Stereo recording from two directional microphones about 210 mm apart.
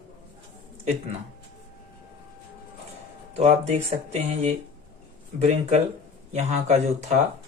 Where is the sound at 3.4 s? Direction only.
35° right (ahead or behind).